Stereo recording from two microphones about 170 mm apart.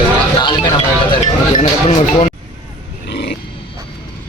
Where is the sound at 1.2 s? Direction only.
45° left (ahead or behind).